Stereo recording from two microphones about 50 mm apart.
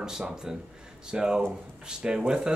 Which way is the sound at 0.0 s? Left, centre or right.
Centre.